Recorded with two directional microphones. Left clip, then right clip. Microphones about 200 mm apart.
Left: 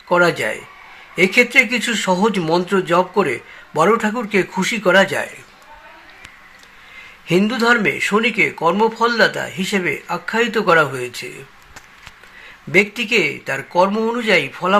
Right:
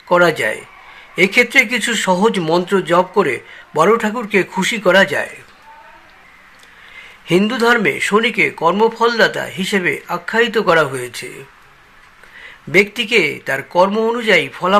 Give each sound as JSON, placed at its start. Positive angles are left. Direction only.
{"t": 0.1, "sound": "speech", "side_deg": -10}
{"t": 7.3, "sound": "speech", "side_deg": -10}
{"t": 12.7, "sound": "speech", "side_deg": -10}